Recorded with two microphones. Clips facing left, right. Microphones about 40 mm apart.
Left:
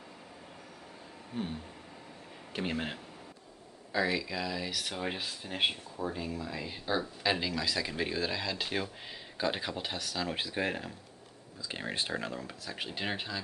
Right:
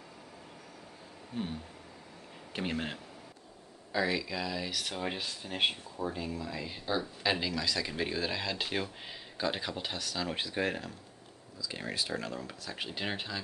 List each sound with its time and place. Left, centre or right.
2.5 s speech: centre
11.5 s speech: left
12.4 s speech: centre